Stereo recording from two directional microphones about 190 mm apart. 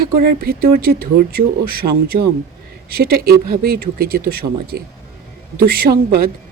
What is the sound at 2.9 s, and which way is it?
Speech, 50° right (ahead or behind).